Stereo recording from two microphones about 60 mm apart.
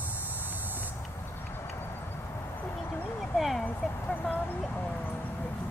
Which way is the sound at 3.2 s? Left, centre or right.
Centre.